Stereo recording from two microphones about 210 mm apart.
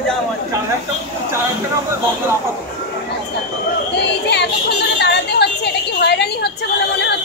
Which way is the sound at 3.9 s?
55° left (ahead or behind).